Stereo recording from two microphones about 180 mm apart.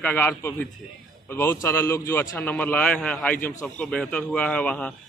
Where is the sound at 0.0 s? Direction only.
10° left (ahead or behind).